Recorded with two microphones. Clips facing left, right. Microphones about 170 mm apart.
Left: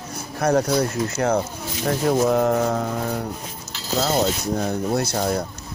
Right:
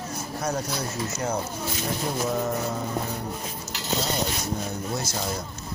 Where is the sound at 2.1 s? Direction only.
65° left (ahead or behind).